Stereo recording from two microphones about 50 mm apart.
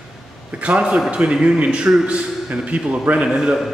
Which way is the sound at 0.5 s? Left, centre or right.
Right.